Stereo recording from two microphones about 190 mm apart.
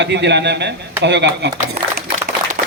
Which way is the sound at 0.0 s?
65° right (ahead or behind).